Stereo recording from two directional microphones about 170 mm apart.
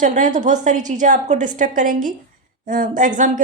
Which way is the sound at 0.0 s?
45° right (ahead or behind).